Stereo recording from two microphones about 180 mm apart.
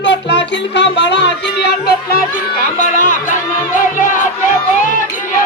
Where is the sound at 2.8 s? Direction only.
45° left (ahead or behind).